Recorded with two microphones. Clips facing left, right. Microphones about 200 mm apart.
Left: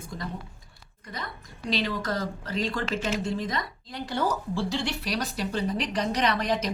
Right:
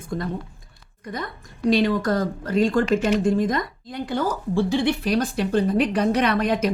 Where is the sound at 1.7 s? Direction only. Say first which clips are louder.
Right 9 dB; 50° right (ahead or behind).